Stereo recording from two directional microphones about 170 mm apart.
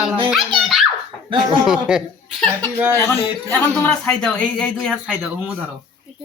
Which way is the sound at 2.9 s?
10° left (ahead or behind).